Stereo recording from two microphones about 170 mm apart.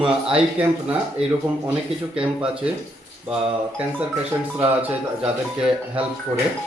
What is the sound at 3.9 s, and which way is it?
Speech, 10° right (ahead or behind).